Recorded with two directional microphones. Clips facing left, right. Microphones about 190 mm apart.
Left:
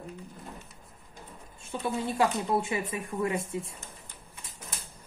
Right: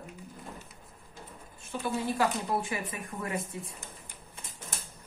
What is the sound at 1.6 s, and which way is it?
Speech, 25° left (ahead or behind).